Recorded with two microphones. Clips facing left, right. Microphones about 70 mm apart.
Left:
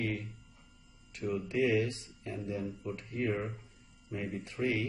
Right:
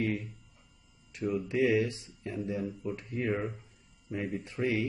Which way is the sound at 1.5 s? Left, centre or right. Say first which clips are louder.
Right 2 dB; centre.